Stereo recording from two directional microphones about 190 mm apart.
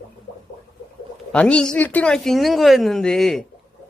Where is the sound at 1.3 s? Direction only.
5° left (ahead or behind).